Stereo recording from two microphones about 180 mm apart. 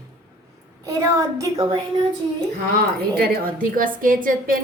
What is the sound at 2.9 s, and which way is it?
A woman's voice, 60° right (ahead or behind).